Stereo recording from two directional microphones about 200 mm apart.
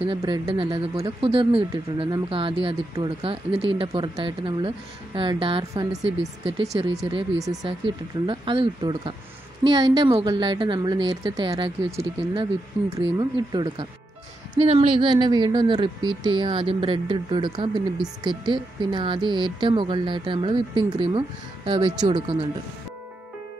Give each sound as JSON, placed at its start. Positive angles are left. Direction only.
{"t": 0.0, "sound": "speech", "side_deg": -25}
{"t": 6.7, "sound": "speech", "side_deg": -15}